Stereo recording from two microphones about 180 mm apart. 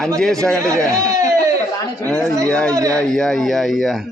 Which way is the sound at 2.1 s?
5° left (ahead or behind).